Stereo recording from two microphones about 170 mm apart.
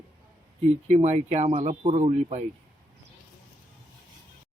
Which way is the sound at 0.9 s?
40° right (ahead or behind).